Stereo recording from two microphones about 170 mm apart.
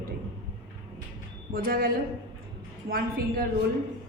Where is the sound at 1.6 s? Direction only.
60° right (ahead or behind).